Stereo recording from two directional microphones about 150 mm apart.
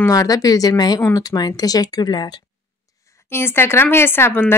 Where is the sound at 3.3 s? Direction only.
15° left (ahead or behind).